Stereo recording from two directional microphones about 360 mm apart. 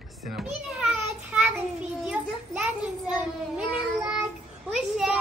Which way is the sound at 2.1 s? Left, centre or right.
Centre.